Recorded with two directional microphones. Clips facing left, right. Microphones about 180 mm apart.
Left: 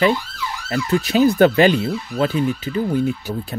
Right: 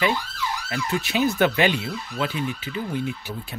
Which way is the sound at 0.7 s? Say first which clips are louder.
Left 10 dB; 40° left (ahead or behind).